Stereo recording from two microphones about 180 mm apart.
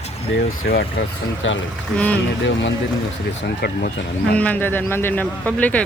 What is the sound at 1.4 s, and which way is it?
Speech, 90° left.